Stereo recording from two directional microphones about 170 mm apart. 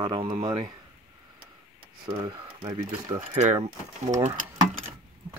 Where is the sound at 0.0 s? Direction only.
30° right (ahead or behind).